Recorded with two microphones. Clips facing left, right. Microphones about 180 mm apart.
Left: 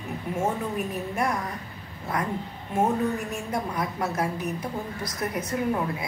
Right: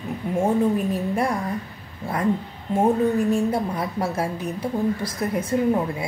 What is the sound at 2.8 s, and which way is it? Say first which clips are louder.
A woman's voice: right 5 dB; 30° right (ahead or behind).